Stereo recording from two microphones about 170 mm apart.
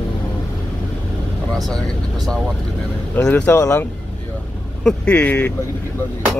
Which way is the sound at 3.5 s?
20° left (ahead or behind).